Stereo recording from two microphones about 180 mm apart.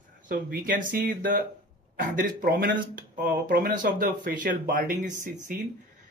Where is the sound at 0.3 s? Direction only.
50° right (ahead or behind).